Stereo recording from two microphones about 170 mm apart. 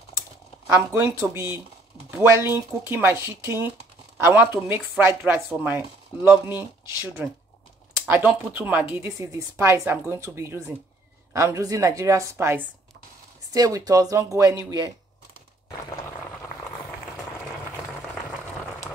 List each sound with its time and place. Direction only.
0.9 s a woman's voice: 15° right (ahead or behind)